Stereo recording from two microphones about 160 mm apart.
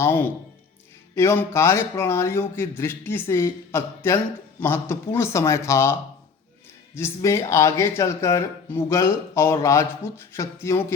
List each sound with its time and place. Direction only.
0.0 s speech: 10° left (ahead or behind)